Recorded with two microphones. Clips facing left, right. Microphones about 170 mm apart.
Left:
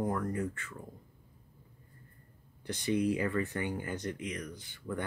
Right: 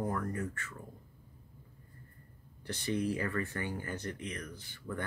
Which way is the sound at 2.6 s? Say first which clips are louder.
Left 3 dB; 15° left (ahead or behind).